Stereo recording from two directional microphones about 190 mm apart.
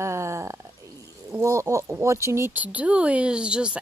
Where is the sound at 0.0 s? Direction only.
15° right (ahead or behind).